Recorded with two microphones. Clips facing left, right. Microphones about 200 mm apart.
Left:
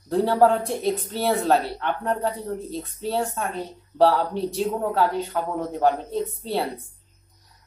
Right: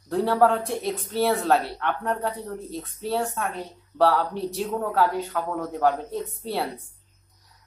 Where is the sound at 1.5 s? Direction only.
30° left (ahead or behind).